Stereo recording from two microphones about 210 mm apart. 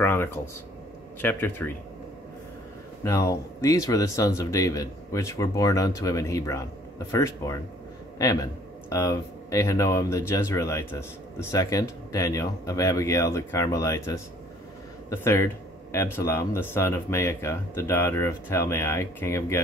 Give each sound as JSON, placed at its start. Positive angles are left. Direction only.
{"t": 0.0, "sound": "a sound", "side_deg": 10}
{"t": 1.2, "sound": "a man's voice", "side_deg": 10}
{"t": 3.0, "sound": "a man's voice", "side_deg": 15}